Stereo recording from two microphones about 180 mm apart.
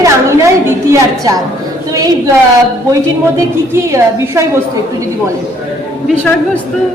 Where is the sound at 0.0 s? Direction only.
15° right (ahead or behind).